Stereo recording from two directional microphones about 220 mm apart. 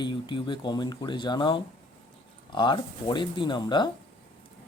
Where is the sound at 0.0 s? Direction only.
20° left (ahead or behind).